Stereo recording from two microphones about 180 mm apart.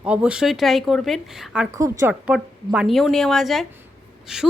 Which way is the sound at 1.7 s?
20° right (ahead or behind).